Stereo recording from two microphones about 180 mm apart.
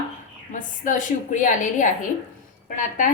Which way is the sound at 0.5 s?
45° left (ahead or behind).